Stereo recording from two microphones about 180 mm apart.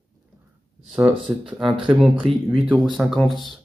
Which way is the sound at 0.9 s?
5° right (ahead or behind).